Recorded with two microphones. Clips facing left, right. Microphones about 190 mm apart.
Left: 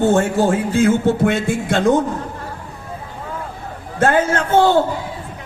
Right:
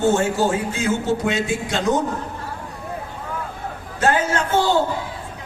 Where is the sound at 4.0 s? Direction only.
55° left (ahead or behind).